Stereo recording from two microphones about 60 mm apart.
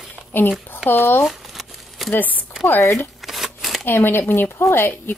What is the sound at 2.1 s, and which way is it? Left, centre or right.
Speech, left.